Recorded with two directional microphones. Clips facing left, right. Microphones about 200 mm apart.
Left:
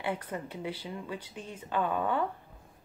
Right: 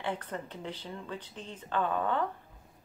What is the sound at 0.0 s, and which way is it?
Speech, 10° left (ahead or behind).